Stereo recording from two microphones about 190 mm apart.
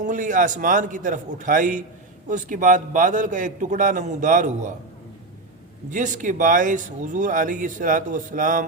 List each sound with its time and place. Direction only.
0.0 s a man's voice: 40° right (ahead or behind)
5.9 s speech: 40° right (ahead or behind)